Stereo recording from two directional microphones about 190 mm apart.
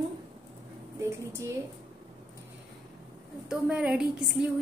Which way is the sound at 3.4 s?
5° right (ahead or behind).